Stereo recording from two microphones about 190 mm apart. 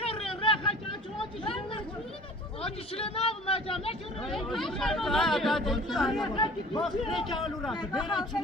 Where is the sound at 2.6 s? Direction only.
30° left (ahead or behind).